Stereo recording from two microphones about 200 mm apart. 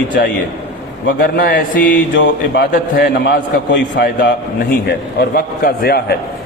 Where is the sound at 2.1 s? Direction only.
55° left (ahead or behind).